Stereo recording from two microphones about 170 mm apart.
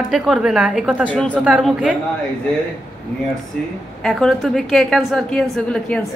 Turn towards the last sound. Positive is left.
turn(degrees=5)  # may be behind; listen again after turning